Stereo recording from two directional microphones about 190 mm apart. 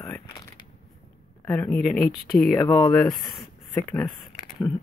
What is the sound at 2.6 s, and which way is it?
Speech, 20° left (ahead or behind).